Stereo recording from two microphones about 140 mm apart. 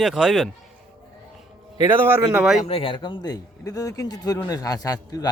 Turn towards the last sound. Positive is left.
turn(degrees=25)  # may be behind; listen again after turning